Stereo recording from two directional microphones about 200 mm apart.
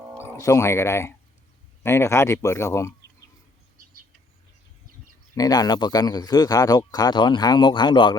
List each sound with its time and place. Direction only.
0.3 s speech: 15° left (ahead or behind)
5.3 s speech: 20° left (ahead or behind)